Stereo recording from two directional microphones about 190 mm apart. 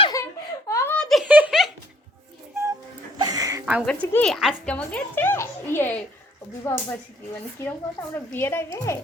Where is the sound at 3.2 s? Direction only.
20° right (ahead or behind).